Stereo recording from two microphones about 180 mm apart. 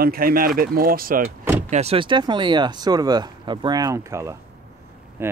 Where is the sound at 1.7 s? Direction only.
35° right (ahead or behind).